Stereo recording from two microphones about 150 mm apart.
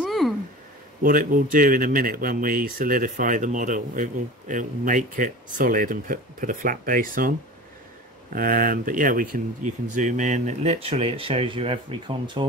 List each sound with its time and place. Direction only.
0.0 s a sound: centre (ahead or behind)
1.0 s speech: 65° right (ahead or behind)
8.4 s speech: 70° right (ahead or behind); by 12.4 s 35° right (ahead or behind)